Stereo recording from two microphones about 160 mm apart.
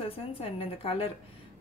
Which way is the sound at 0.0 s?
35° left (ahead or behind).